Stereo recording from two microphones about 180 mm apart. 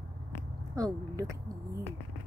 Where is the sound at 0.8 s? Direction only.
20° right (ahead or behind).